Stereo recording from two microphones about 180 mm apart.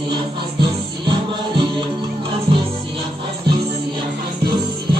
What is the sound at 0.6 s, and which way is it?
Music, 25° right (ahead or behind).